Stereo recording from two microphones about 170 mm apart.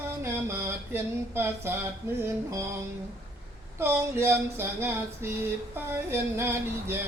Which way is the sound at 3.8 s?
15° right (ahead or behind).